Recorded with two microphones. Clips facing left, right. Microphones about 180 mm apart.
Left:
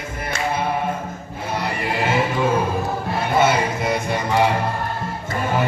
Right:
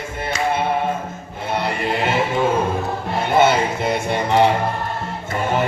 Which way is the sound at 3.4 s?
25° right (ahead or behind).